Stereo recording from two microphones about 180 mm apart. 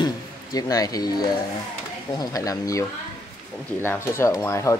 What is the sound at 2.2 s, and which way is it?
Speech, 20° left (ahead or behind).